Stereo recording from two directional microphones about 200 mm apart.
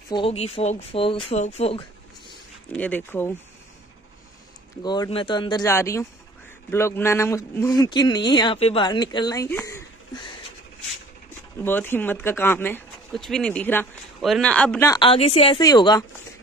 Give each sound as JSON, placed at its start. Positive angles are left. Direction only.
{"t": 0.1, "sound": "a man's voice", "side_deg": 30}
{"t": 2.7, "sound": "speech", "side_deg": 10}
{"t": 4.8, "sound": "a man's voice", "side_deg": 20}
{"t": 11.6, "sound": "speech", "side_deg": 10}
{"t": 14.9, "sound": "a man's voice", "side_deg": 25}